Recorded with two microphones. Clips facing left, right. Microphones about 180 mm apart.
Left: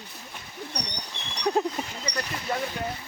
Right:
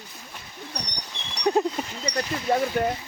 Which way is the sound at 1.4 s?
Centre (ahead or behind).